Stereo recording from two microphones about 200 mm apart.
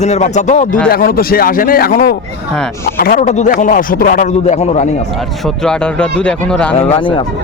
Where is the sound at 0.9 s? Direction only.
45° left (ahead or behind).